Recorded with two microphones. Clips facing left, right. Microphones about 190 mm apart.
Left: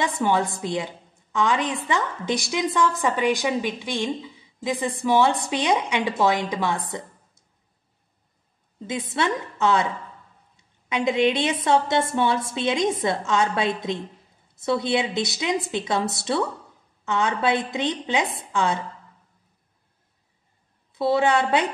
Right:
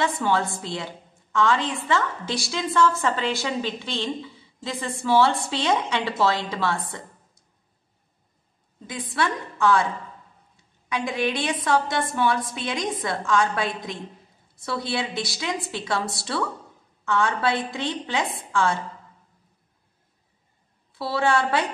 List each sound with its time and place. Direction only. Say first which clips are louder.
0.0 s a woman's voice: left 1 dB; 15° left (ahead or behind)
8.8 s a woman's voice: left 2 dB; 20° left (ahead or behind)
10.9 s a woman's voice: left 5 dB; 20° left (ahead or behind)
20.9 s a woman's voice: left 3 dB; 20° left (ahead or behind)